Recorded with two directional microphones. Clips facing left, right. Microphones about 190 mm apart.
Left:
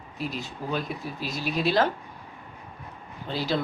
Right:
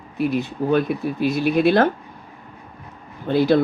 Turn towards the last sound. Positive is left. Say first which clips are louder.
# right 11 dB
turn(degrees=-55)  # may be behind; listen again after turning